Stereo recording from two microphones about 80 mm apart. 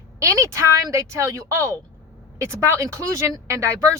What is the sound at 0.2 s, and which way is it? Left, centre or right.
Speech, right.